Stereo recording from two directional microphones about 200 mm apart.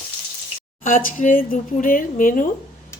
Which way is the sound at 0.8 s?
40° left (ahead or behind).